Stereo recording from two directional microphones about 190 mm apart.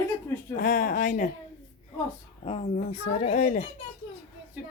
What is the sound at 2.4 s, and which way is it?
A child's voice, 35° left (ahead or behind).